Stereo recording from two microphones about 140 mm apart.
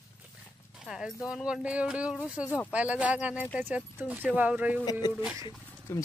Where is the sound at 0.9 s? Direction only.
5° right (ahead or behind).